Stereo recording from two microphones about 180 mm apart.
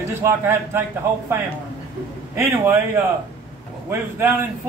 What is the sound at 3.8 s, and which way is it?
Speech, 10° right (ahead or behind).